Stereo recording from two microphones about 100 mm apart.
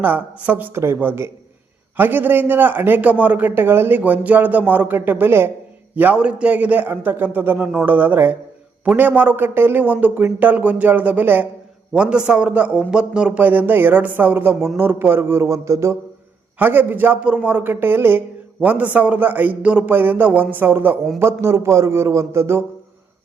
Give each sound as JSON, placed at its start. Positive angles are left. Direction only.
{"t": 0.0, "sound": "a man's voice", "side_deg": -15}
{"t": 16.6, "sound": "a man's voice", "side_deg": -20}